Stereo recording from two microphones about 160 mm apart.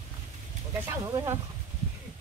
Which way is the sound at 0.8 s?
20° right (ahead or behind).